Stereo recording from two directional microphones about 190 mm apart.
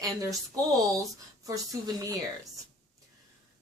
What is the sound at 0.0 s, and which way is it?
Speech, 20° right (ahead or behind).